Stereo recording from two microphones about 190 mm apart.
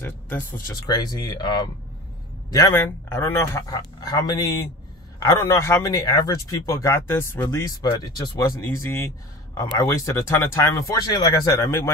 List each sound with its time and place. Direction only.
0.0 s a man's voice: 10° left (ahead or behind)